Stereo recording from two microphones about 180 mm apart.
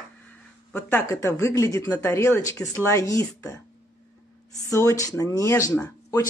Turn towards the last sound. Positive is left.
turn(degrees=15)  # may be behind; listen again after turning